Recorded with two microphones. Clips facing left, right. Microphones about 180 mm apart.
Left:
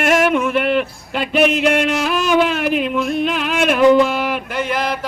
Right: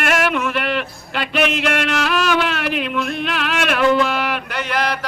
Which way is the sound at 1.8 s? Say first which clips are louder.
Left 1 dB; 10° left (ahead or behind).